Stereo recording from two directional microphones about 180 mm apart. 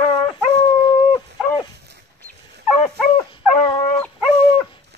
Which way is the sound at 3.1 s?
25° left (ahead or behind).